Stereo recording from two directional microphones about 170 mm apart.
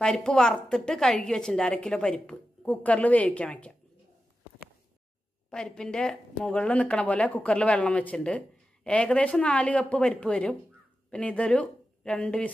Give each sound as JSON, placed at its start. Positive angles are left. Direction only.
{"t": 0.0, "sound": "a woman's voice", "side_deg": 5}
{"t": 5.5, "sound": "a woman's voice", "side_deg": 5}